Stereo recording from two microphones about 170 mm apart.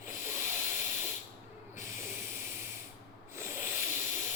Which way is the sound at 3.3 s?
15° right (ahead or behind).